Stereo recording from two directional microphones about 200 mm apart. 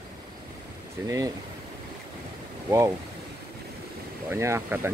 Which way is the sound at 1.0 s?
15° right (ahead or behind).